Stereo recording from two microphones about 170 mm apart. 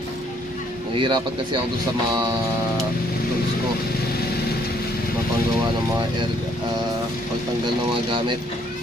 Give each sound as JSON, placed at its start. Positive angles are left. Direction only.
{"t": 0.9, "sound": "speech", "side_deg": -30}